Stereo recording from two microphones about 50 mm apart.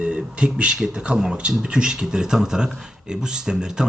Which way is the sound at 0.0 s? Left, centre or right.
Centre.